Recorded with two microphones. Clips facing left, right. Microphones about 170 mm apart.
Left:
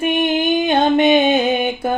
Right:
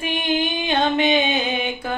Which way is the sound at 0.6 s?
50° left (ahead or behind).